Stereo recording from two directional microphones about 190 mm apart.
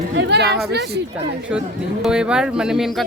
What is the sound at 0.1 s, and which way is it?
Speech, 65° right (ahead or behind).